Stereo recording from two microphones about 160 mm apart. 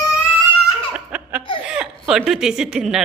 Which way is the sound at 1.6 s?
5° right (ahead or behind).